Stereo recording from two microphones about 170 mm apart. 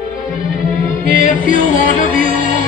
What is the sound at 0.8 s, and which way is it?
Music, 50° left (ahead or behind).